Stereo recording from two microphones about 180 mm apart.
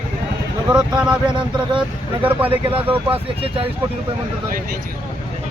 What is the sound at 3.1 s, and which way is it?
Speech, 30° right (ahead or behind).